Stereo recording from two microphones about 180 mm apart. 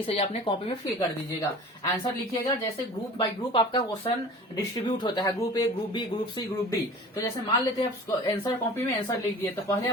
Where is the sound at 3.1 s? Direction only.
30° left (ahead or behind).